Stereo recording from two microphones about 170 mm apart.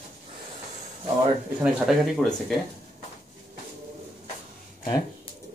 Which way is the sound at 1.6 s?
Centre (ahead or behind).